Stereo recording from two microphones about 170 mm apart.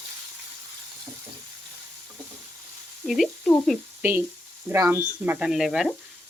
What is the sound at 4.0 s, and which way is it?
Speech, 10° right (ahead or behind).